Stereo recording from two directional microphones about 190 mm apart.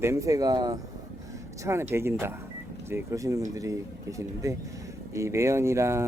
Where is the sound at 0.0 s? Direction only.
15° right (ahead or behind).